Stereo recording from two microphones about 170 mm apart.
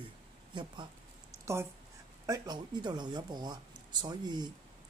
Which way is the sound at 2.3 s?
25° right (ahead or behind).